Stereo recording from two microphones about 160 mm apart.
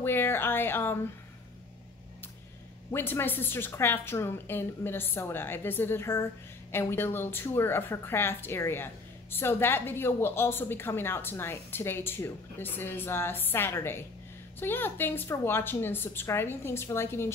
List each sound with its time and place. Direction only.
0.0 s a woman's voice: 15° left (ahead or behind)
2.9 s a woman's voice: 15° left (ahead or behind)